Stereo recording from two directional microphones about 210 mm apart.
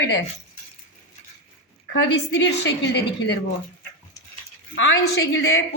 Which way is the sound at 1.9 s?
55° left (ahead or behind).